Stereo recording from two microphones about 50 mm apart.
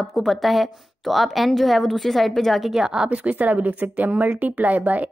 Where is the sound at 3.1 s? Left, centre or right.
Right.